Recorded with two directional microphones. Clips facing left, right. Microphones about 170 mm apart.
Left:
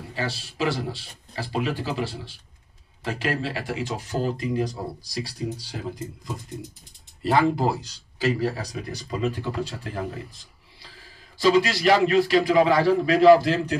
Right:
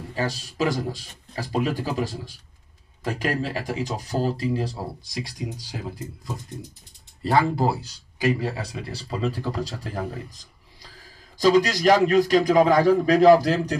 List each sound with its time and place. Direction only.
0.1 s a man's voice: 40° right (ahead or behind); by 5.8 s 10° right (ahead or behind)
7.3 s speech: 5° right (ahead or behind)
8.4 s speech: 25° right (ahead or behind)